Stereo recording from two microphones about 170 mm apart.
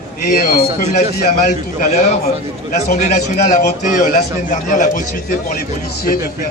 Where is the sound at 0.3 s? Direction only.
60° left (ahead or behind).